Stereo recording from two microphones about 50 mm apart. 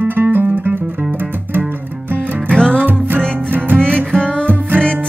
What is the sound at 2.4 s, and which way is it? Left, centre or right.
Music, centre.